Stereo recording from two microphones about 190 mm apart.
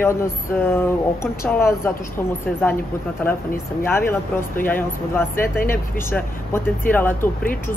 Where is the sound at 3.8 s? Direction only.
10° left (ahead or behind).